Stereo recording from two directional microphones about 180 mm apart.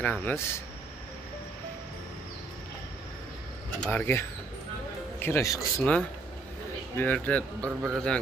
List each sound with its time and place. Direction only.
0.0 s speech: 10° left (ahead or behind)
3.8 s speech: 10° left (ahead or behind)
7.0 s speech: 10° left (ahead or behind)
7.6 s a man's voice: 15° right (ahead or behind)